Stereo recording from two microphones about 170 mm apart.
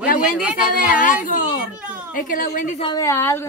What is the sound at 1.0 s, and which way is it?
Speech, 50° left (ahead or behind).